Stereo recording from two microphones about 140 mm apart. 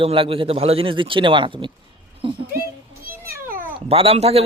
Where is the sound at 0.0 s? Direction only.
40° right (ahead or behind).